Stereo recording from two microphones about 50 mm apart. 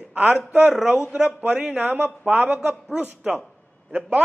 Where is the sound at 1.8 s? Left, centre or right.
Right.